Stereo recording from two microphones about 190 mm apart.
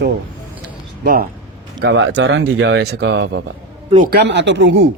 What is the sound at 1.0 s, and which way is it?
Speech, 50° right (ahead or behind).